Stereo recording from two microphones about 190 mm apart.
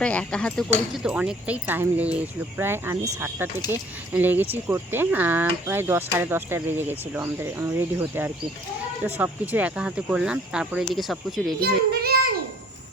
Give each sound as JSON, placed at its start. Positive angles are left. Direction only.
{"t": 0.0, "sound": "speech", "side_deg": 5}
{"t": 9.0, "sound": "speech", "side_deg": -10}
{"t": 11.6, "sound": "child singing", "side_deg": -55}